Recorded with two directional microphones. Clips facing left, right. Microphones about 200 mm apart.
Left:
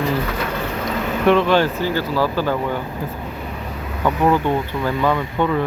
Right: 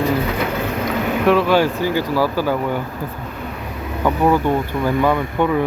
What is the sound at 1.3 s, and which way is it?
Speech, 5° right (ahead or behind).